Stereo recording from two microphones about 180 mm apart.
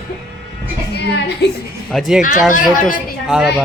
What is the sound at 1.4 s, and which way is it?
Speech, 70° left (ahead or behind).